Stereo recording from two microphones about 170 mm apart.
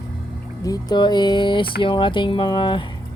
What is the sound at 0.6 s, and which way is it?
Speech, 25° left (ahead or behind).